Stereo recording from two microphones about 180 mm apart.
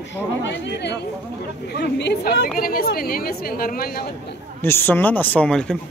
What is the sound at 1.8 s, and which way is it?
A woman's voice, 65° left (ahead or behind).